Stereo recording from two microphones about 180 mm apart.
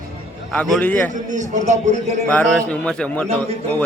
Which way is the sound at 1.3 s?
40° right (ahead or behind).